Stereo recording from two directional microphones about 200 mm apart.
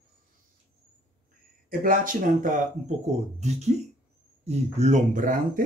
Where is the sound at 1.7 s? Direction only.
45° right (ahead or behind).